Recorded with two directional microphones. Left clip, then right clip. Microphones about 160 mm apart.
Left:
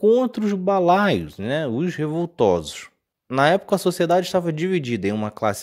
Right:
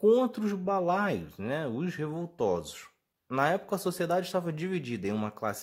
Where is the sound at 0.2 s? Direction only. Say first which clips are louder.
Left 8 dB; 35° left (ahead or behind).